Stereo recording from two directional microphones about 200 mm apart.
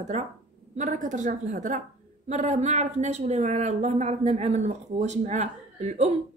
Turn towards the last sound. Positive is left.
turn(degrees=-35)  # may be behind; listen again after turning